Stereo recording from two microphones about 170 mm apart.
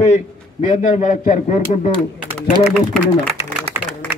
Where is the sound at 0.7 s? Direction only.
45° left (ahead or behind).